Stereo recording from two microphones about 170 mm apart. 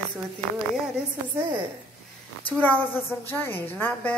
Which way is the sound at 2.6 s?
10° left (ahead or behind).